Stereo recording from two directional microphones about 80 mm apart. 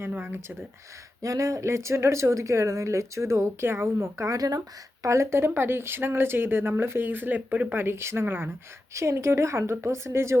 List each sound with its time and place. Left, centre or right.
0.0 s speech: right
1.2 s a woman's voice: right
4.3 s speech: right
8.9 s a woman's voice: right